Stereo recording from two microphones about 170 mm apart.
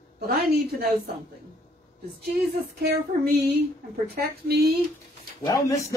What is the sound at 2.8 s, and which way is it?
Speech, 70° right (ahead or behind).